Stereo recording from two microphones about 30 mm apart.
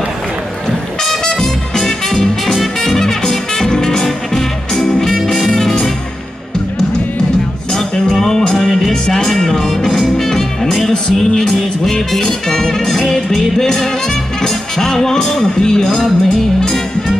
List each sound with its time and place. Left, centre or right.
1.2 s music: centre
5.1 s music: centre
7.9 s music: centre
15.3 s a man's voice: left
16.0 s music: centre